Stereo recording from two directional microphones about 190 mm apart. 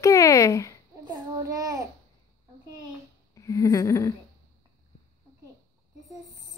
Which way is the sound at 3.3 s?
15° left (ahead or behind).